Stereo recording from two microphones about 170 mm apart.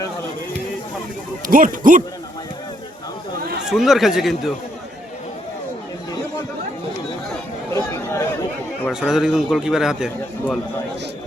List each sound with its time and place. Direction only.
1.5 s speech: 50° right (ahead or behind)
3.7 s a man's voice: centre (ahead or behind)
7.7 s a sound: 20° left (ahead or behind)
8.9 s a man's voice: 5° right (ahead or behind)